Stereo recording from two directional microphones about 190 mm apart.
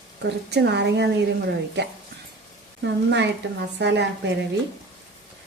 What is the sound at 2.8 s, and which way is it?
A woman's voice, 70° right (ahead or behind).